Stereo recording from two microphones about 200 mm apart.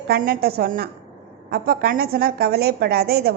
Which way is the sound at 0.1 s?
50° right (ahead or behind).